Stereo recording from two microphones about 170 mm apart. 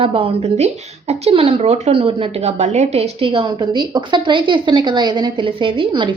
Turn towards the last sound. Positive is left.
turn(degrees=-30)  # may be behind; listen again after turning